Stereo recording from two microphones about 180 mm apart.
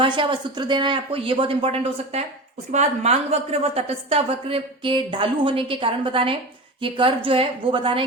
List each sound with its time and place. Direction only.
0.0 s a woman's voice: 25° right (ahead or behind)